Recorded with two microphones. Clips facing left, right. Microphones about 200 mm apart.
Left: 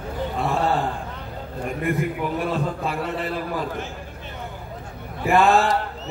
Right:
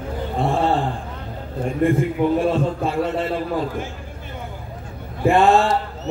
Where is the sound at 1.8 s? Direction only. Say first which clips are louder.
Right 7 dB; 25° right (ahead or behind).